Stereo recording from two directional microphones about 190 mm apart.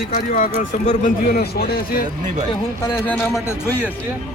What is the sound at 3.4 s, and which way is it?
Speech, 10° left (ahead or behind).